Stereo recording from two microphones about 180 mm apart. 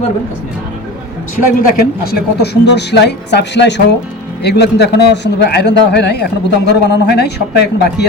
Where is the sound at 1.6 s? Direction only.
60° left (ahead or behind).